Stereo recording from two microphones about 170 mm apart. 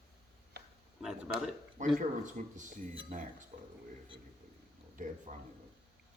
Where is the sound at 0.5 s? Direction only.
70° right (ahead or behind).